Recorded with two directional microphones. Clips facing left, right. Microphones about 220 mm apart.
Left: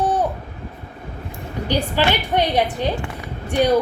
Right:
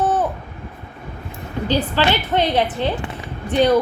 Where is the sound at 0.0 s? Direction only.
10° left (ahead or behind).